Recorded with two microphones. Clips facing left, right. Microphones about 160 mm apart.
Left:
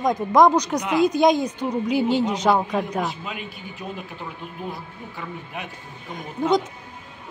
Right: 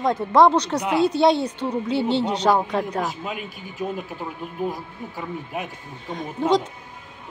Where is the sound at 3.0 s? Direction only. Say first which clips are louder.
Right 1 dB; 45° right (ahead or behind).